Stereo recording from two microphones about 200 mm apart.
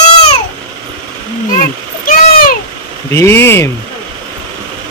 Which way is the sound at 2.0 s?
45° left (ahead or behind).